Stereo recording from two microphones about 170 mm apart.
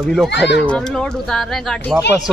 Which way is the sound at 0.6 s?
5° left (ahead or behind).